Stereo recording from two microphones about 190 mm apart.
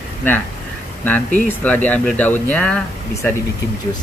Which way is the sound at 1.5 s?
10° left (ahead or behind).